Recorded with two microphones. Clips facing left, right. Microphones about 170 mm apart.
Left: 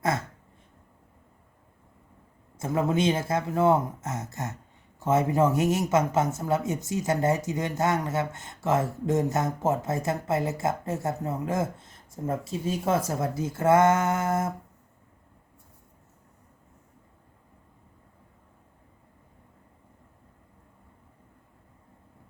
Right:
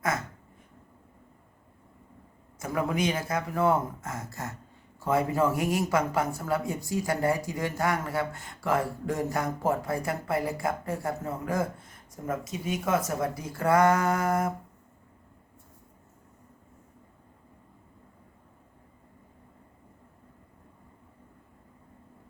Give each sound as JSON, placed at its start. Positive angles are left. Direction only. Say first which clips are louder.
{"t": 2.6, "sound": "speech", "louder": "left 3 dB", "side_deg": 25}